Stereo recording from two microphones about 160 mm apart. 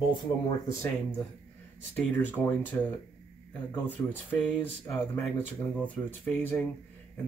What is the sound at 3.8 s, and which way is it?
Speech, 10° left (ahead or behind).